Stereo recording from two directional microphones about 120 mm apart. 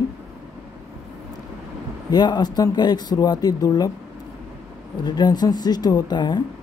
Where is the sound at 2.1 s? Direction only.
35° left (ahead or behind).